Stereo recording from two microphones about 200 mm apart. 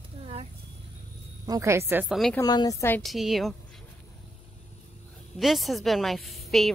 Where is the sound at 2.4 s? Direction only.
20° left (ahead or behind).